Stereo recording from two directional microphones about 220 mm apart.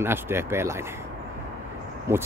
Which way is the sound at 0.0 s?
10° right (ahead or behind).